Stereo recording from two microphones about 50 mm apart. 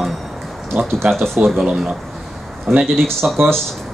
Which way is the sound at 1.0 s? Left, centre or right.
Right.